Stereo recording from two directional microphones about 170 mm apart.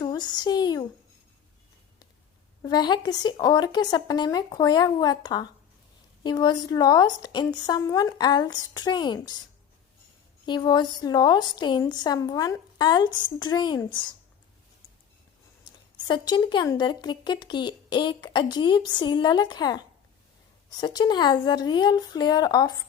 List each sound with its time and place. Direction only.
0.0 s a sound: 25° left (ahead or behind)
2.6 s speech: 25° left (ahead or behind)
10.4 s speech: 25° left (ahead or behind)
16.0 s speech: 25° left (ahead or behind)